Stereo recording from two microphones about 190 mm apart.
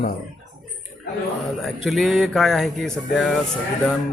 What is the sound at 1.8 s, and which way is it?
Speech, centre (ahead or behind).